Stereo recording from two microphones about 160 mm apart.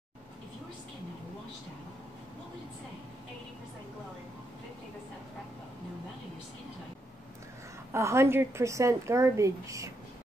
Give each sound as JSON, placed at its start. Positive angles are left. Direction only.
{"t": 7.9, "sound": "a woman's voice", "side_deg": -15}